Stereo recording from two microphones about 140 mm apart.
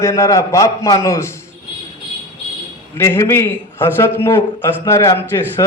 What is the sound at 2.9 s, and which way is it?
A man's voice, 15° left (ahead or behind).